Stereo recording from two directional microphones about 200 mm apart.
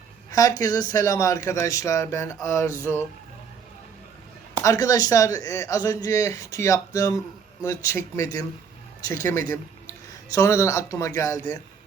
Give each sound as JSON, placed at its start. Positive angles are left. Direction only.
{"t": 0.3, "sound": "speech", "side_deg": 20}
{"t": 4.6, "sound": "a man's voice", "side_deg": 15}